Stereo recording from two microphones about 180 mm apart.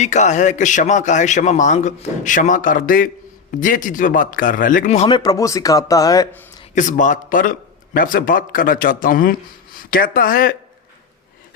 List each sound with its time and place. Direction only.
0.0 s a man's voice: 40° left (ahead or behind)
5.1 s speech: 20° left (ahead or behind)
6.7 s a man's voice: 45° left (ahead or behind)